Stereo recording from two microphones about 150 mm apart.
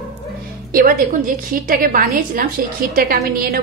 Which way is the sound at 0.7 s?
65° right (ahead or behind).